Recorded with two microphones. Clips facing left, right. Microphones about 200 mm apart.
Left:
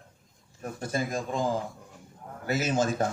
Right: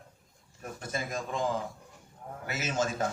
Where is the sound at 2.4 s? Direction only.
35° left (ahead or behind).